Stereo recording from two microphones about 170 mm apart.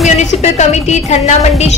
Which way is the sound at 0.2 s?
40° left (ahead or behind).